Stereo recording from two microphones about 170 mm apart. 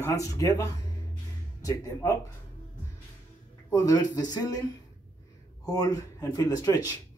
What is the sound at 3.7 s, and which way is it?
Speech, 20° left (ahead or behind).